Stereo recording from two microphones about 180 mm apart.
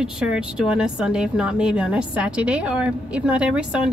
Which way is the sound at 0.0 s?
5° right (ahead or behind).